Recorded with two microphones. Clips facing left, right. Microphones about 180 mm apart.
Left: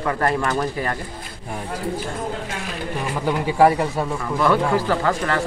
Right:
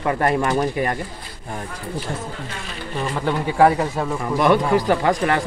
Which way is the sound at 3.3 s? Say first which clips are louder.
Even; 5° left (ahead or behind).